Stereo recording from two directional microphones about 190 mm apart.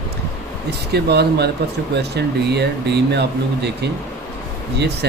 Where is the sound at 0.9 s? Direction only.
60° right (ahead or behind).